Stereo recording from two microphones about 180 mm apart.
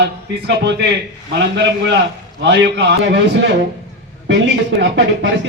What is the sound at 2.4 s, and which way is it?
Speech, 75° right (ahead or behind).